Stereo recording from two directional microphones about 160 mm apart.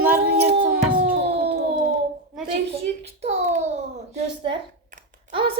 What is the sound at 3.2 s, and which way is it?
Child singing, 45° right (ahead or behind).